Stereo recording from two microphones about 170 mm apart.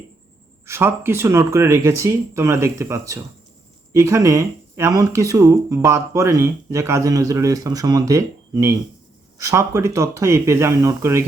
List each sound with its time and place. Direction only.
0.6 s speech: 15° right (ahead or behind)